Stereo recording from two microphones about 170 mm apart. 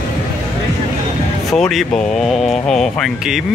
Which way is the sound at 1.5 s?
Centre (ahead or behind).